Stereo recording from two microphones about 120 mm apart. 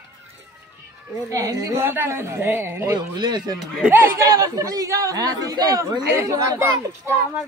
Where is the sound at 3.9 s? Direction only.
20° right (ahead or behind).